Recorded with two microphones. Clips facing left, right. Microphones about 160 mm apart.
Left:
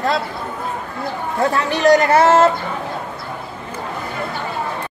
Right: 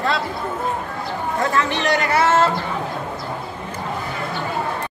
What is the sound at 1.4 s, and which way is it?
Speech, 35° left (ahead or behind).